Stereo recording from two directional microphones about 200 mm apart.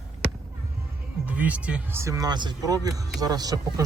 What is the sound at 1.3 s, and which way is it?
Speech, 5° right (ahead or behind).